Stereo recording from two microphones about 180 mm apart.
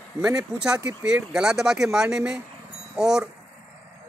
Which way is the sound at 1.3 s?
5° right (ahead or behind).